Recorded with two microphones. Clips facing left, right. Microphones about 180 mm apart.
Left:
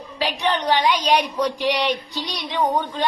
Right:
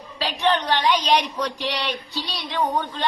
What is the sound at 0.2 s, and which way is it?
Child singing, 10° left (ahead or behind).